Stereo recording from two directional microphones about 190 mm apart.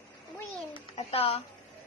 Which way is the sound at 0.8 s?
30° left (ahead or behind).